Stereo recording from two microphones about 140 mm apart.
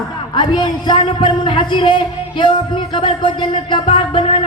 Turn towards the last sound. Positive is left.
turn(degrees=40)  # may be behind; listen again after turning